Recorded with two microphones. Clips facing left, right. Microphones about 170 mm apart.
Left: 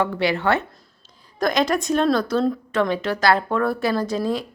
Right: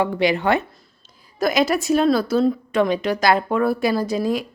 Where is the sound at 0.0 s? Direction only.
15° right (ahead or behind).